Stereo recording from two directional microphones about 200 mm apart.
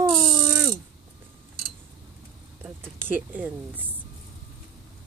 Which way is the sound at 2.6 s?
10° right (ahead or behind).